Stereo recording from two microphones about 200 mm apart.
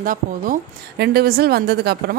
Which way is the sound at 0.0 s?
45° right (ahead or behind).